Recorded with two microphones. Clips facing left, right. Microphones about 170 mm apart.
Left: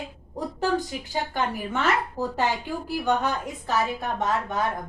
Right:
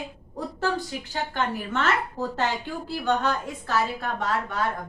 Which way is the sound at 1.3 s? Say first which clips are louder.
Right 2 dB; 15° left (ahead or behind).